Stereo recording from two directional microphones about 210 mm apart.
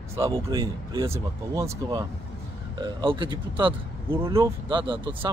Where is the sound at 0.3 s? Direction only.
20° right (ahead or behind).